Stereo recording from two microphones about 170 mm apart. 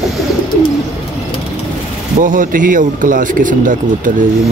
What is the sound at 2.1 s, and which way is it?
A man's voice, 50° right (ahead or behind).